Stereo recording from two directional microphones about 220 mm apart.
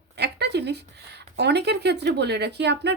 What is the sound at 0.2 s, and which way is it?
Speech, 50° right (ahead or behind).